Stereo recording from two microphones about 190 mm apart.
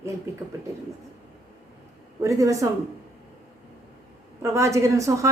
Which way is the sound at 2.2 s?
15° right (ahead or behind).